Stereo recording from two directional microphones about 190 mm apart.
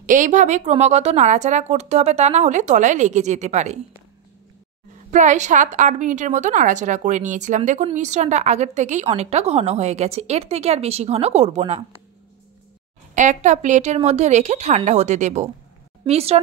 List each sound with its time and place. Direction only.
0.0 s a woman's voice: 40° right (ahead or behind)
5.1 s a woman's voice: 40° right (ahead or behind)
13.1 s a woman's voice: 40° right (ahead or behind)